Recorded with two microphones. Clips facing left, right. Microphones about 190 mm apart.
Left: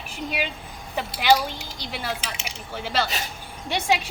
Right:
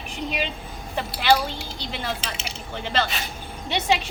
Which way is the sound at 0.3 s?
10° left (ahead or behind).